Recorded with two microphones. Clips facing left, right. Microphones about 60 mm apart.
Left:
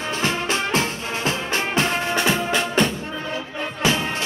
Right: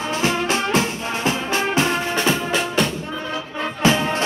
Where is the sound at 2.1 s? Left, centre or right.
Centre.